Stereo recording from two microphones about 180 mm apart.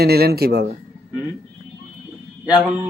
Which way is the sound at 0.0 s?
60° right (ahead or behind).